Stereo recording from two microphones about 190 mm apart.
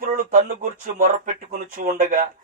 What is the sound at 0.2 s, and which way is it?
Speech, 45° right (ahead or behind).